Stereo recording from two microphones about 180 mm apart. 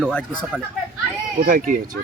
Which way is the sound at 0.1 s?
5° left (ahead or behind).